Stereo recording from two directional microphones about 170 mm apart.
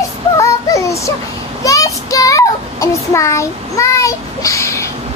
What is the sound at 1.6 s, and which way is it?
A child's voice, 20° left (ahead or behind).